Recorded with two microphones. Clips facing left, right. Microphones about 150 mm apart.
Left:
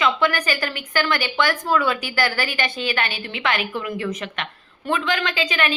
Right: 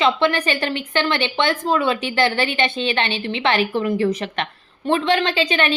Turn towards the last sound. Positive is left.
turn(degrees=-30)  # may be behind; listen again after turning